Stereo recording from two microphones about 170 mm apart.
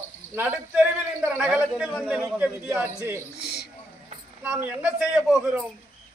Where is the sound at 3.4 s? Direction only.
75° left (ahead or behind).